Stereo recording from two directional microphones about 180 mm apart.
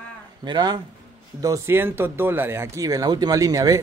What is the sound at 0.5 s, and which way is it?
Speech, 20° right (ahead or behind).